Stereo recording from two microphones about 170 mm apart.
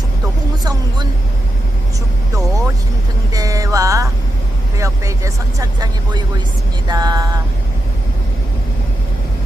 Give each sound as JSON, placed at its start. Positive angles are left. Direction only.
{"t": 0.6, "sound": "speech", "side_deg": -25}
{"t": 3.3, "sound": "a sound", "side_deg": -20}
{"t": 4.8, "sound": "speech", "side_deg": -20}